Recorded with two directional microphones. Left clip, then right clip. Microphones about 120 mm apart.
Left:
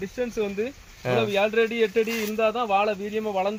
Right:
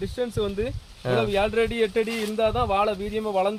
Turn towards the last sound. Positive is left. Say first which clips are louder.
# right 2 dB
turn(degrees=-35)  # may be behind; listen again after turning